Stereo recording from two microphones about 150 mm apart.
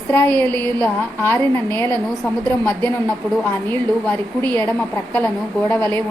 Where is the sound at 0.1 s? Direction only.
15° left (ahead or behind).